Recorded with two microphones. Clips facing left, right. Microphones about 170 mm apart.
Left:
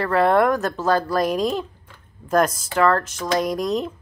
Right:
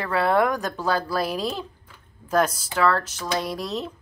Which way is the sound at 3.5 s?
45° left (ahead or behind).